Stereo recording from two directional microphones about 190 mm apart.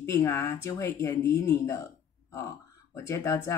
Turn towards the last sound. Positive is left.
turn(degrees=15)  # may be behind; listen again after turning